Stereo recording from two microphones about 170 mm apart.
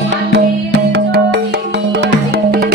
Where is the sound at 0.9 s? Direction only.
80° right; by 2.7 s 65° right (ahead or behind).